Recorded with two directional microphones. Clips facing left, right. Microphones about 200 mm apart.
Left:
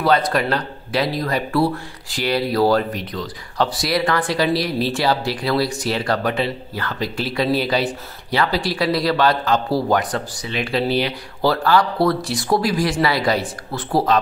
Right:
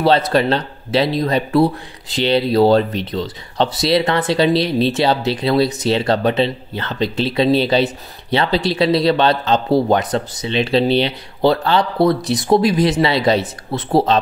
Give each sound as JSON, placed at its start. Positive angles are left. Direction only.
{"t": 0.0, "sound": "speech", "side_deg": -25}